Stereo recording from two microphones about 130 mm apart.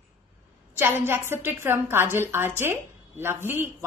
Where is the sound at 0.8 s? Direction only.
15° right (ahead or behind).